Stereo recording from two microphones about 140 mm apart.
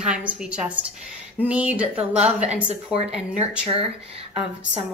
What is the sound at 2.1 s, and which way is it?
Speech, 50° right (ahead or behind).